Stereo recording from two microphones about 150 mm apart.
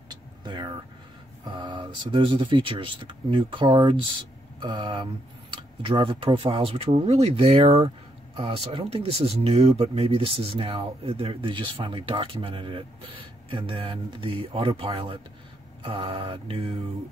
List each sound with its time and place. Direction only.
0.1 s vehicle: 30° right (ahead or behind)
1.5 s speech: 30° right (ahead or behind)